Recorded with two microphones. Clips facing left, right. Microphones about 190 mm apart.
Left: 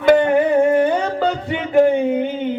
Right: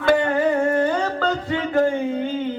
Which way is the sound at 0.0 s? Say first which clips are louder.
Left 5 dB; 20° left (ahead or behind).